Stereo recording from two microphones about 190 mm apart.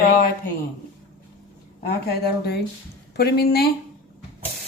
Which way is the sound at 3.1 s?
55° left (ahead or behind).